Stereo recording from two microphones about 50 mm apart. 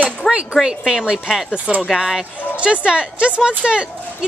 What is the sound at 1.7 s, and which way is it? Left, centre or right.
Speech, right.